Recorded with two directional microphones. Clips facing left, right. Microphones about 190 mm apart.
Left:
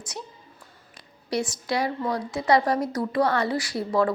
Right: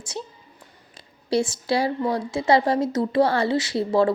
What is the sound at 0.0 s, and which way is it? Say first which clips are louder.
A woman's voice: right 4 dB; 30° right (ahead or behind).